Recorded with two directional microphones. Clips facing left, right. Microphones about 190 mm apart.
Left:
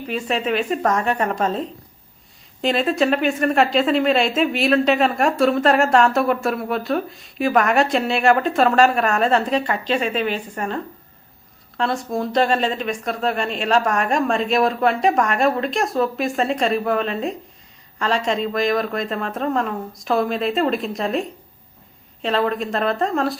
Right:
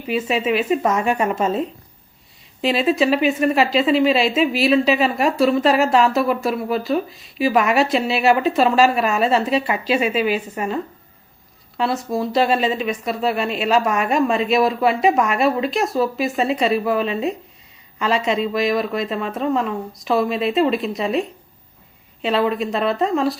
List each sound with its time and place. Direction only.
0.1 s a woman's voice: 5° right (ahead or behind)
11.8 s speech: centre (ahead or behind)